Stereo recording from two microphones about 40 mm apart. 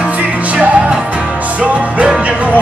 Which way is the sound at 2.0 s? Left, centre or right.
Right.